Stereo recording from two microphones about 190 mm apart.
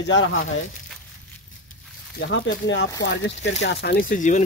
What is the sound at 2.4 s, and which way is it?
Speech, 70° left (ahead or behind).